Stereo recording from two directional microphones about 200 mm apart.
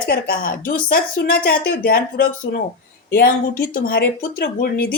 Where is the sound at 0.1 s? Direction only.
45° left (ahead or behind).